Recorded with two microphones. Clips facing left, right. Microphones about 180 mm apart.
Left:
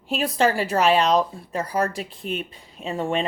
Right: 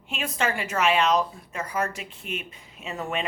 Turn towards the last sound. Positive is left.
turn(degrees=30)  # may be behind; listen again after turning